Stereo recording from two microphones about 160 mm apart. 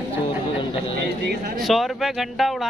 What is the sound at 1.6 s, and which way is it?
Speech, centre (ahead or behind).